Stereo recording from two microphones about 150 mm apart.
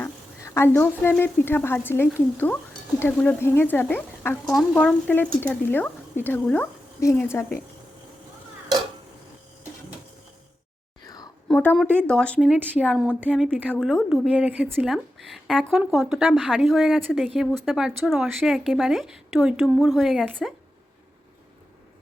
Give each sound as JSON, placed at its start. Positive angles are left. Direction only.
{"t": 0.0, "sound": "a woman's voice", "side_deg": 15}
{"t": 11.0, "sound": "whispering", "side_deg": 25}
{"t": 11.4, "sound": "a sound", "side_deg": 10}
{"t": 12.0, "sound": "speech", "side_deg": 5}
{"t": 12.4, "sound": "speech", "side_deg": -10}
{"t": 12.7, "sound": "speech", "side_deg": 5}
{"t": 13.1, "sound": "speech", "side_deg": -10}
{"t": 13.7, "sound": "a woman's voice", "side_deg": 0}
{"t": 14.3, "sound": "a woman's voice", "side_deg": -10}